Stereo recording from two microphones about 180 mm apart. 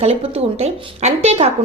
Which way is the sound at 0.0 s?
35° right (ahead or behind).